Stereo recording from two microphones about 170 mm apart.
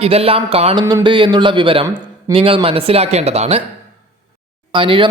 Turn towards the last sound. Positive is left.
turn(degrees=-30)  # may be behind; listen again after turning